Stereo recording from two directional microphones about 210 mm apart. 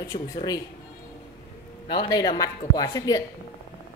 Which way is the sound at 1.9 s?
20° left (ahead or behind).